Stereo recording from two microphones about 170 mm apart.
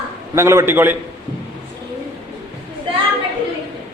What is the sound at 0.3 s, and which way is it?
Speech, 15° right (ahead or behind).